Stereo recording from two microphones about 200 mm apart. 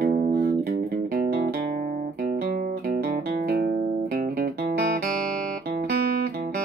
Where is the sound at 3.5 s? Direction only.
55° right (ahead or behind).